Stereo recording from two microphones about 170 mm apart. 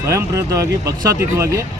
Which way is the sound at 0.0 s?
15° right (ahead or behind).